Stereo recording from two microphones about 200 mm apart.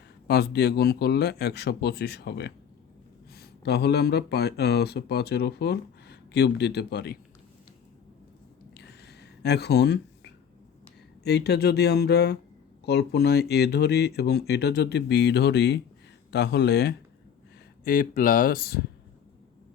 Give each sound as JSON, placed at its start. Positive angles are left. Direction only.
{"t": 0.3, "sound": "speech", "side_deg": 55}
{"t": 8.7, "sound": "a sound", "side_deg": 55}
{"t": 11.2, "sound": "speech", "side_deg": 55}
{"t": 17.8, "sound": "speech", "side_deg": 45}